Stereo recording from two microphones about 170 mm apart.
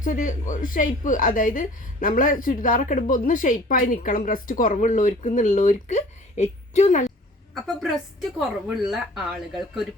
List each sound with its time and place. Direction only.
0.0 s a woman's voice: 50° left (ahead or behind)
7.5 s a woman's voice: centre (ahead or behind)